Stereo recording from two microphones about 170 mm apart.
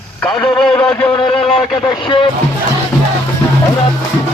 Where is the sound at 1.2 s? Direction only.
30° left (ahead or behind).